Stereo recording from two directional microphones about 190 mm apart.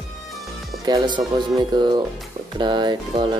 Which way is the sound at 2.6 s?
25° right (ahead or behind).